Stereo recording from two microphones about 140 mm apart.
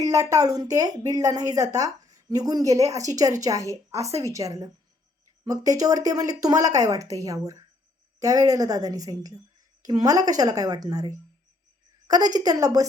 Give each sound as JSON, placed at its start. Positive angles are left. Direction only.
{"t": 0.0, "sound": "speech", "side_deg": -25}